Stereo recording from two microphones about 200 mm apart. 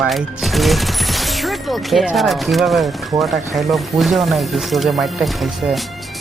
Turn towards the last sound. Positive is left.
turn(degrees=0)  # may be behind; listen again after turning